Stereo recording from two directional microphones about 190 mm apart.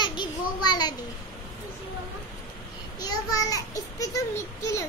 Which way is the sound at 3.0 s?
20° left (ahead or behind).